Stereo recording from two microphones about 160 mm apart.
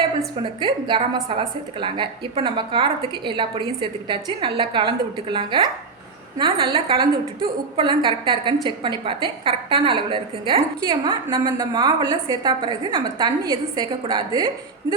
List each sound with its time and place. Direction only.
0.6 s a woman's voice: 30° right (ahead or behind)